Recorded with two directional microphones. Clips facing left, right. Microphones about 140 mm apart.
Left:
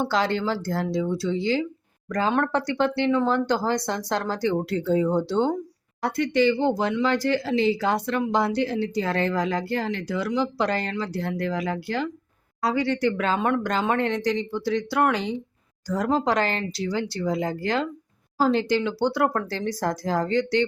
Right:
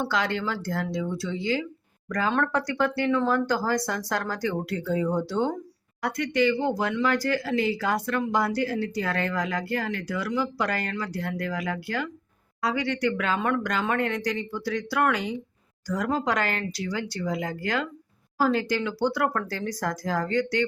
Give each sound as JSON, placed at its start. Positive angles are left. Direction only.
{"t": 0.1, "sound": "speech", "side_deg": 30}